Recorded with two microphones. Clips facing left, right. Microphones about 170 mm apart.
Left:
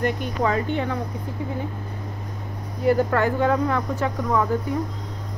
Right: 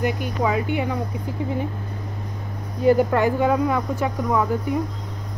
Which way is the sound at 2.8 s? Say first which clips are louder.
Right 3 dB; 15° right (ahead or behind).